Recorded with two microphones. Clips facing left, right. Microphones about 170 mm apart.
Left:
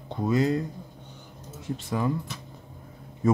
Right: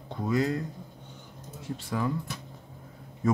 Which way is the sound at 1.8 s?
20° left (ahead or behind).